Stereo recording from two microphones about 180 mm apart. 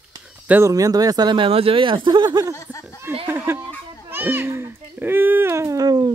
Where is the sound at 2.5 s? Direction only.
15° left (ahead or behind).